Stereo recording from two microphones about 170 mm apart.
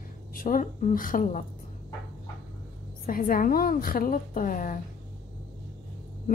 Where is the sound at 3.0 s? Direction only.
55° left (ahead or behind).